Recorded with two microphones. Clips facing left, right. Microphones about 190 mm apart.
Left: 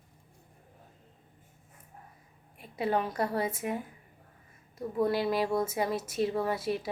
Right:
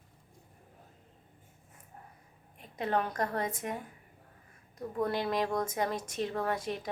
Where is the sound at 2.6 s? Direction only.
10° left (ahead or behind).